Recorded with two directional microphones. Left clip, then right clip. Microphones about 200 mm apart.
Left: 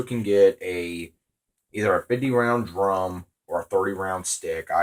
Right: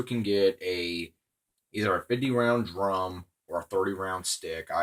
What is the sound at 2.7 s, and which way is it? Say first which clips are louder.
Speech: left 5 dB; 40° right (ahead or behind).